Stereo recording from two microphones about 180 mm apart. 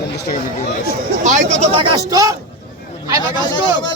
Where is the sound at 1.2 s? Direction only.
40° right (ahead or behind); by 2.3 s 20° right (ahead or behind).